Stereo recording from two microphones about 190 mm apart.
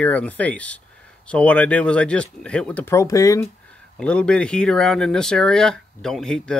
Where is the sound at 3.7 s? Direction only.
5° left (ahead or behind).